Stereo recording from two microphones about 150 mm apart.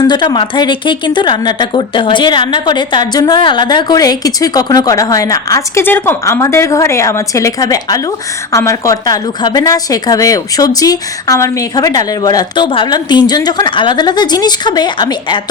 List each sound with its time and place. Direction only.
0.0 s a woman's voice: 30° left (ahead or behind)